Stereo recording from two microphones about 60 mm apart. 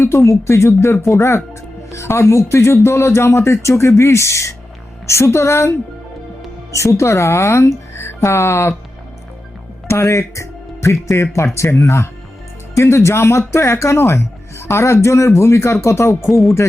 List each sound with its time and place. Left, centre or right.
0.0 s speech: left
9.8 s music: left
11.5 s speech: left
16.2 s speech: centre